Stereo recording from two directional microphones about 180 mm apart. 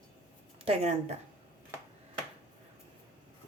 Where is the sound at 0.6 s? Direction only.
35° right (ahead or behind).